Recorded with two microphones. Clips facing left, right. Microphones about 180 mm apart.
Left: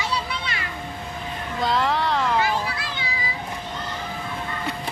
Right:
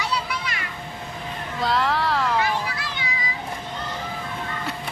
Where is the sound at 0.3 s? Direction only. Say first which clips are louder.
Even; 30° left (ahead or behind).